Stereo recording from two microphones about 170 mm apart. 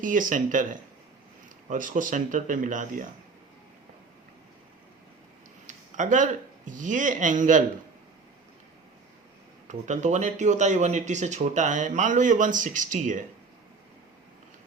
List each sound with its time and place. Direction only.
0.0 s speech: 50° right (ahead or behind)
5.6 s speech: 50° right (ahead or behind)
9.6 s speech: 45° right (ahead or behind)